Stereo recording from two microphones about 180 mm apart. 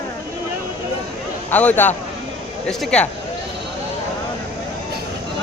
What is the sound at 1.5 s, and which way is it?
A man's voice, 10° left (ahead or behind).